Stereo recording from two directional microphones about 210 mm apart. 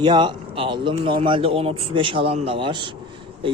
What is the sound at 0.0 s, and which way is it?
Speech, 20° right (ahead or behind).